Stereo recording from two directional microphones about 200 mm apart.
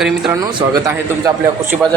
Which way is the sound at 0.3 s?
15° right (ahead or behind).